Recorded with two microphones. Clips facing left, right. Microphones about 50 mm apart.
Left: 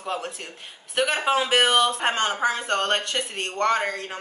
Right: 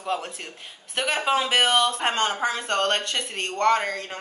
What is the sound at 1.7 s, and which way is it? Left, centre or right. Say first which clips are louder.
Speech: left 1 dB; left.